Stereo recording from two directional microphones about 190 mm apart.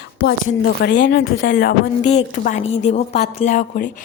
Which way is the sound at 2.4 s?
35° left (ahead or behind).